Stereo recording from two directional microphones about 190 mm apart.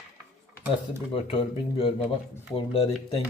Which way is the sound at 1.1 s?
30° left (ahead or behind).